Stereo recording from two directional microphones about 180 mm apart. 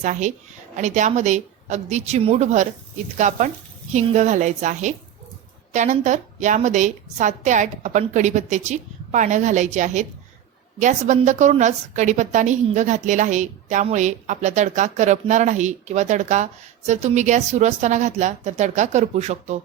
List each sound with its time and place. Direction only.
0.0 s a woman's voice: 40° right (ahead or behind)